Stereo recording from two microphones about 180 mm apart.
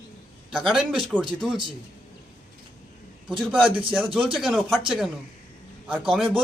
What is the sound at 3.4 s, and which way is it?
A man's voice, 5° right (ahead or behind).